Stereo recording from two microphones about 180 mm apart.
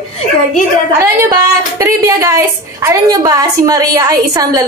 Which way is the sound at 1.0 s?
15° right (ahead or behind).